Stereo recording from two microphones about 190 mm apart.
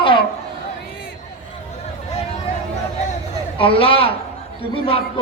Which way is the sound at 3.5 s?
30° left (ahead or behind).